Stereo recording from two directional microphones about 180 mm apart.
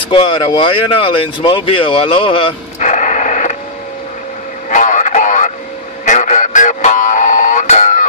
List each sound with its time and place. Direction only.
0.0 s speech: 25° left (ahead or behind)
2.8 s radio: 45° left (ahead or behind)
4.6 s radio: 45° left (ahead or behind)
6.0 s music: 40° left (ahead or behind)